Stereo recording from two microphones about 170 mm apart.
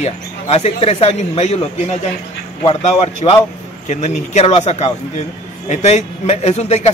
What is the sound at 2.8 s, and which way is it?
Speech, 40° left (ahead or behind).